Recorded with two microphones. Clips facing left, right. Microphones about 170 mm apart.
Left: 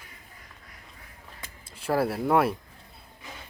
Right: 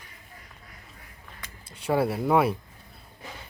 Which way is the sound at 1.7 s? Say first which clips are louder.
Right 1 dB; centre (ahead or behind).